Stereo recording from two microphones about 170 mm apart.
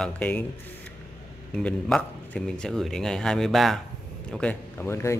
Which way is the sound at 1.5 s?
5° left (ahead or behind).